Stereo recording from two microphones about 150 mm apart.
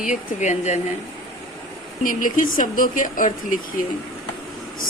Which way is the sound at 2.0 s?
65° left (ahead or behind).